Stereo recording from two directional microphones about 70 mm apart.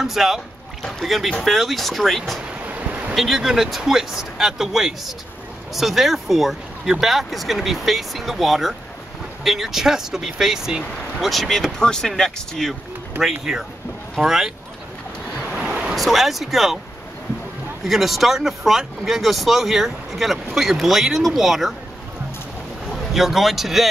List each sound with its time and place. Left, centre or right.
0.0 s speech: centre
2.4 s boat: centre
3.2 s speech: centre
13.2 s speech: centre
15.5 s a sound: centre
15.9 s speech: centre
17.8 s speech: centre
22.8 s speech: centre